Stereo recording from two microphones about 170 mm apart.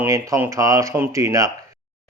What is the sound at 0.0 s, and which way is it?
Speech, 15° right (ahead or behind).